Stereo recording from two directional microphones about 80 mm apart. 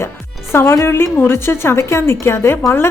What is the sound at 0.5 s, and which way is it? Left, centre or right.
Speech, left.